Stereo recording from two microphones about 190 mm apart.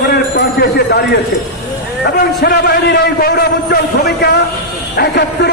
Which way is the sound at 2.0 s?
55° left (ahead or behind).